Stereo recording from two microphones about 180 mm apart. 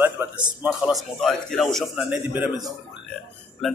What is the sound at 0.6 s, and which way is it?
A man's voice, 5° right (ahead or behind).